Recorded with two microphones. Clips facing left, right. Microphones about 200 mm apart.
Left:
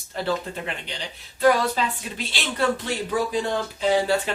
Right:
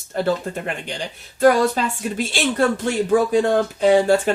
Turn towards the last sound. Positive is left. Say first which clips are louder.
# right 6 dB
turn(degrees=-45)  # may be behind; listen again after turning